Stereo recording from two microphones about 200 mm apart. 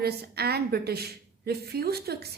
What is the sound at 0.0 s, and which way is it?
Speech, 50° right (ahead or behind).